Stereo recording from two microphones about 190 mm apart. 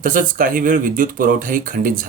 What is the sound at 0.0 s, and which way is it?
Speech, 45° right (ahead or behind).